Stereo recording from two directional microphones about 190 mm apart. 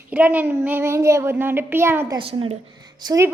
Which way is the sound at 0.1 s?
10° right (ahead or behind).